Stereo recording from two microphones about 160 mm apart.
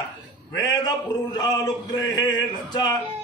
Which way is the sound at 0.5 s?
25° left (ahead or behind).